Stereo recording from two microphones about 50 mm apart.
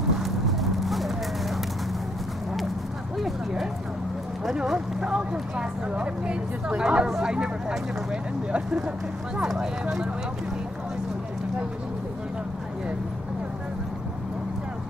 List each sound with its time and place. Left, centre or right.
0.2 s horse: centre
3.2 s clip-clop: centre
4.5 s speech: centre